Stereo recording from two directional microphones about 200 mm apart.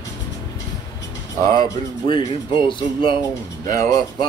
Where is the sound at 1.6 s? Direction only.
25° left (ahead or behind).